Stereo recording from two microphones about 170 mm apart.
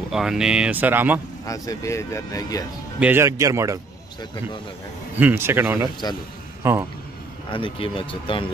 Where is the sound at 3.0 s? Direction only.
15° right (ahead or behind).